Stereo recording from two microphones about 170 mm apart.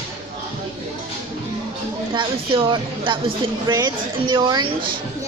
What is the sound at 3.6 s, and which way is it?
Speech, 25° right (ahead or behind).